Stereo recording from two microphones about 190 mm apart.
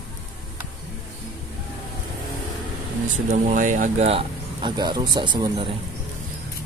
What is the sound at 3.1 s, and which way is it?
Speech, 35° right (ahead or behind).